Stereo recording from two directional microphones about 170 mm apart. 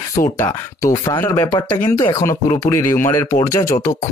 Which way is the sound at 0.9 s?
20° left (ahead or behind).